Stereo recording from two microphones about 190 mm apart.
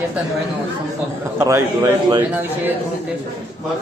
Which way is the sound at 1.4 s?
15° right (ahead or behind).